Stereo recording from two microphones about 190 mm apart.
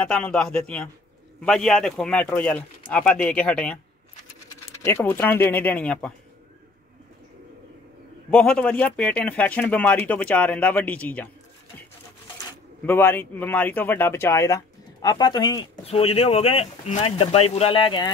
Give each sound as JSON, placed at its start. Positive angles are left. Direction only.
{"t": 0.0, "sound": "speech", "side_deg": 5}
{"t": 4.8, "sound": "speech", "side_deg": 10}
{"t": 8.3, "sound": "speech", "side_deg": 5}
{"t": 12.8, "sound": "speech", "side_deg": 10}